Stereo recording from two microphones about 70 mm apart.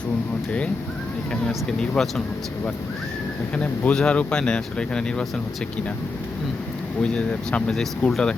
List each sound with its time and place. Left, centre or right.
1.3 s speech: centre
3.6 s speech: centre
7.0 s speech: centre